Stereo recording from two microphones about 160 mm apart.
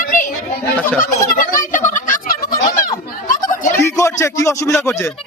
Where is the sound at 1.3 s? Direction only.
60° left (ahead or behind).